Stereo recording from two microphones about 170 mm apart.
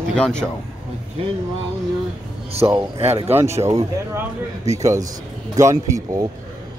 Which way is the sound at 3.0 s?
40° right (ahead or behind).